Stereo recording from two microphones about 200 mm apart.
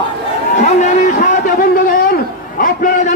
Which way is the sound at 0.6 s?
40° left (ahead or behind).